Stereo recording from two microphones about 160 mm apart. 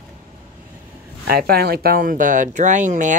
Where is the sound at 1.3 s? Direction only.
75° right (ahead or behind); by 3.2 s 50° right (ahead or behind).